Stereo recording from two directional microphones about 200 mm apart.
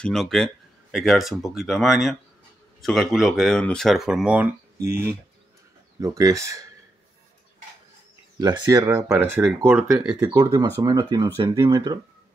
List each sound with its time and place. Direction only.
0.0 s speech: centre (ahead or behind); by 6.6 s 15° right (ahead or behind)
8.4 s speech: 20° right (ahead or behind)